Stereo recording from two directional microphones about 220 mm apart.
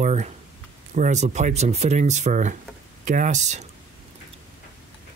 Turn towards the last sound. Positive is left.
turn(degrees=-30)  # may be behind; listen again after turning